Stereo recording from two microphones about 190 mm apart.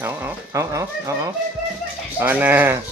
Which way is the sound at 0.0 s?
10° right (ahead or behind).